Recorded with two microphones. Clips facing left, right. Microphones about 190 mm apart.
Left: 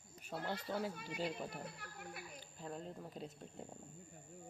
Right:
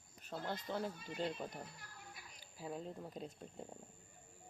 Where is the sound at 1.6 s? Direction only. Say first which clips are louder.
Left 6 dB; 65° left (ahead or behind).